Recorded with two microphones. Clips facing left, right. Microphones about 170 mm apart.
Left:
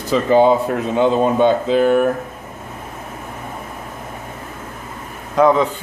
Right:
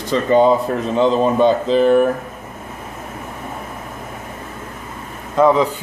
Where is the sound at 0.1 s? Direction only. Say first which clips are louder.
Even; centre (ahead or behind).